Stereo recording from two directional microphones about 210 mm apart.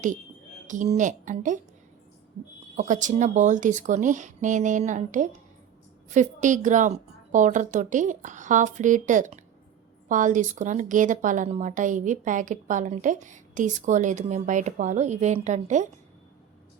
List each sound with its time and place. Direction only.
0.7 s a woman's voice: 35° right (ahead or behind)
2.7 s a woman's voice: 35° right (ahead or behind)